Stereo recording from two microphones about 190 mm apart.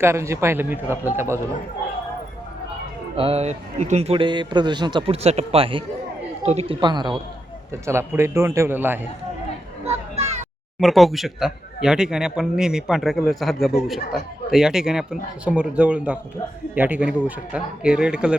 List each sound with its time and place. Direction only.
0.0 s a man's voice: 15° right (ahead or behind)
3.2 s a man's voice: 35° right (ahead or behind); by 9.0 s 10° right (ahead or behind)
9.8 s children playing: 35° right (ahead or behind)
10.8 s a man's voice: centre (ahead or behind)